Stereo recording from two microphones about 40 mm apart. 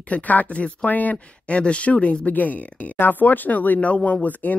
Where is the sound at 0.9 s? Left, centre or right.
Left.